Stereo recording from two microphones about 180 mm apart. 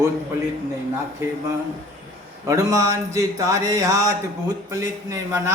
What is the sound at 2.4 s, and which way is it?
A man's voice, 20° right (ahead or behind).